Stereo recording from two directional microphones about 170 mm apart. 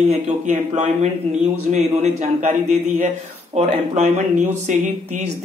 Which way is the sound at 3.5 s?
40° right (ahead or behind).